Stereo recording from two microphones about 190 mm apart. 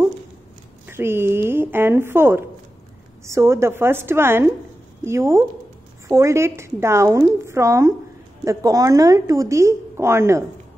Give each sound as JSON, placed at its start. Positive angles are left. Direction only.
{"t": 0.8, "sound": "a woman's voice", "side_deg": -10}